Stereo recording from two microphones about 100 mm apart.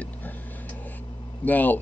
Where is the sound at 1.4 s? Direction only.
15° left (ahead or behind).